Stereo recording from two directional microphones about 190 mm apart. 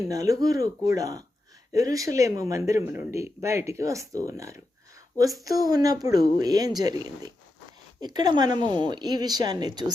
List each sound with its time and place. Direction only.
0.1 s a woman's voice: 20° right (ahead or behind)